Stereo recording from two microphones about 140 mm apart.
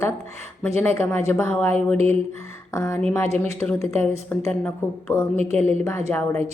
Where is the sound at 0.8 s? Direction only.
15° left (ahead or behind).